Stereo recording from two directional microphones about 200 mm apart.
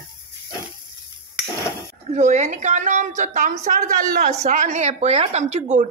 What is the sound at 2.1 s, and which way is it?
A woman's voice, 35° right (ahead or behind).